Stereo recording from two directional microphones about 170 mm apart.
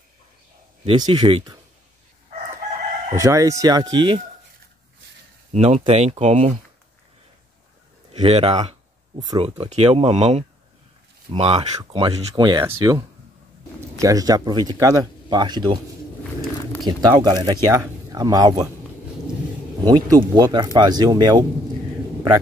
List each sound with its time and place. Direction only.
0.8 s speech: 25° right (ahead or behind)
3.2 s speech: 20° right (ahead or behind)
5.5 s speech: 40° right (ahead or behind)
8.1 s a sound: 35° right (ahead or behind)
9.3 s speech: 25° right (ahead or behind)
16.8 s speech: 25° right (ahead or behind)
19.8 s speech: 25° right (ahead or behind)